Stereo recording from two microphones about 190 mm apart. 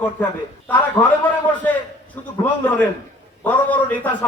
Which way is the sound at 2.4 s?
10° left (ahead or behind).